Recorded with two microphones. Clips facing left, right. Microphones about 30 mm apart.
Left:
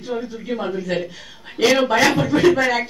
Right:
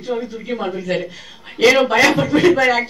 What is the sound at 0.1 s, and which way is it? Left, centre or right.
A woman's voice, centre.